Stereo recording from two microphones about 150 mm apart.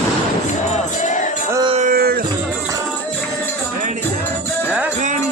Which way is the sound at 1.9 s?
85° right.